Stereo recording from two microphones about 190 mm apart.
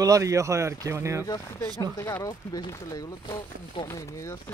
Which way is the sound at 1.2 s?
15° left (ahead or behind).